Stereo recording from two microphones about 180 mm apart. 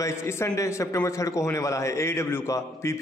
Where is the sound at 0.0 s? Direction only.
15° left (ahead or behind).